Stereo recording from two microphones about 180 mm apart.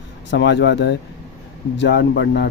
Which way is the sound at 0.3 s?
80° left.